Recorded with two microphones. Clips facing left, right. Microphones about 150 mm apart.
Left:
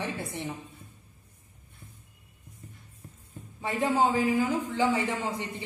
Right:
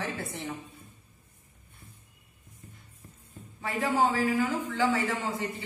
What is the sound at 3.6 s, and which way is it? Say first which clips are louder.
A man's voice: left 1 dB; 20° left (ahead or behind).